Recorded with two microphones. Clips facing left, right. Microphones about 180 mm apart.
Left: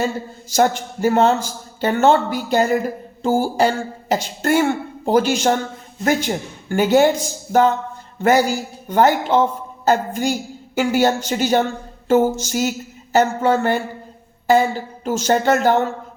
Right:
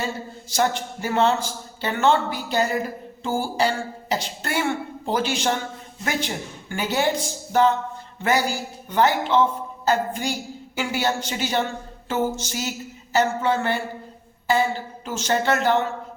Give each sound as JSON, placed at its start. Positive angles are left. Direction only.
{"t": 0.5, "sound": "a man's voice", "side_deg": 45}